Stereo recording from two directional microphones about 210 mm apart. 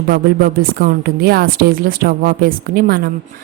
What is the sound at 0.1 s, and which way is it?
Speech, 45° right (ahead or behind).